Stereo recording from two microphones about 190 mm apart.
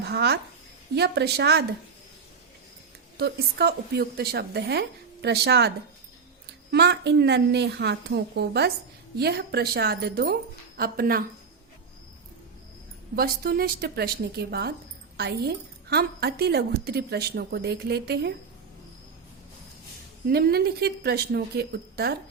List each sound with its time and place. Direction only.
0.0 s a woman's voice: 60° right (ahead or behind)
3.2 s a woman's voice: 60° right (ahead or behind)
13.1 s a woman's voice: 50° right (ahead or behind)
20.2 s a woman's voice: 55° right (ahead or behind)